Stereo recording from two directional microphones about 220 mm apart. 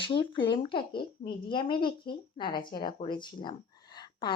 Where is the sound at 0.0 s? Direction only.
25° left (ahead or behind).